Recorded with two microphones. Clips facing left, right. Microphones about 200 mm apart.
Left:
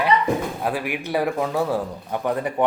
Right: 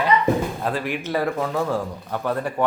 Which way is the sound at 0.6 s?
15° left (ahead or behind).